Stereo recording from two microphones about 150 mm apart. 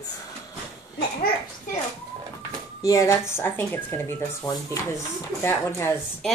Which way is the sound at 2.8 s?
20° left (ahead or behind).